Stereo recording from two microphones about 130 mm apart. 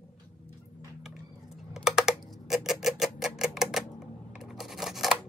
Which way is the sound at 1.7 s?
5° right (ahead or behind).